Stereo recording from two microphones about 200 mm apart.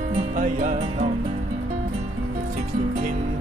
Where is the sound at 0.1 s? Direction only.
40° right (ahead or behind).